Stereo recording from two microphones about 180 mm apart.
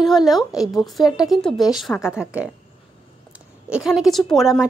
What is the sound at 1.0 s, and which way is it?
Speech, 20° left (ahead or behind).